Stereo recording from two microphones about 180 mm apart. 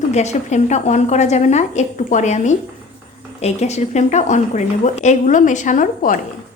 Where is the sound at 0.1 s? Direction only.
40° left (ahead or behind).